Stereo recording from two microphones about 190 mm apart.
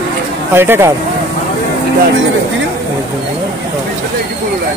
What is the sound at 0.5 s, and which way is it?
Speech, 10° right (ahead or behind).